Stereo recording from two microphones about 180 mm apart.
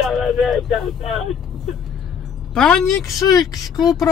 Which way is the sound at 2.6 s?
5° left (ahead or behind).